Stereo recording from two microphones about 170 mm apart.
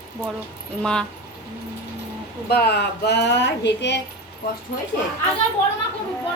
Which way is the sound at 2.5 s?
70° left (ahead or behind).